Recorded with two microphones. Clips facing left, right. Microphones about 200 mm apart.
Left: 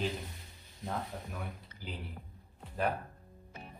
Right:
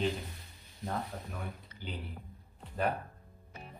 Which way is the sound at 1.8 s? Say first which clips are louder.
Right 2 dB; centre (ahead or behind).